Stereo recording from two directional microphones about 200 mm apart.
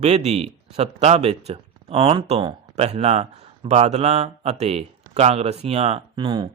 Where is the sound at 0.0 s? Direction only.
30° right (ahead or behind).